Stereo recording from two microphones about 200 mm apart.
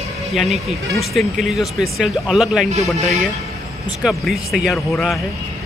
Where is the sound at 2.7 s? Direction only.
35° right (ahead or behind).